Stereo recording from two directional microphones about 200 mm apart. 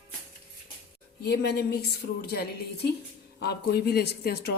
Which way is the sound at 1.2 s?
55° left (ahead or behind).